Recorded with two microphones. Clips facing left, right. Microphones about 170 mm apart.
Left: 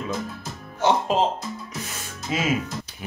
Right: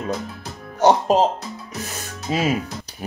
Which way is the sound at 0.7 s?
40° right (ahead or behind).